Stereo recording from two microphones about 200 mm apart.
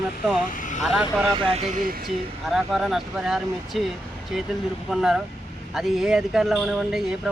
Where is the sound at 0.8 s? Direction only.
Centre (ahead or behind).